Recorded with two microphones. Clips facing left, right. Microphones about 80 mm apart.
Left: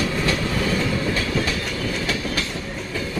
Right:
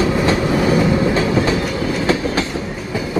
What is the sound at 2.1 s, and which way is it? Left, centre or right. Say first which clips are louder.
Train: right 8 dB; right.